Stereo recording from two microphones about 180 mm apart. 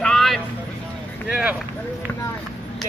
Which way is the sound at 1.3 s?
5° right (ahead or behind).